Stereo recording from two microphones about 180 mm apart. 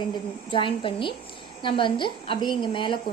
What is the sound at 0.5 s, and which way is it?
A woman's voice, 30° left (ahead or behind).